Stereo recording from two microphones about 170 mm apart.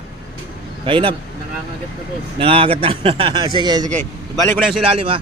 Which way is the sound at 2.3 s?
30° right (ahead or behind).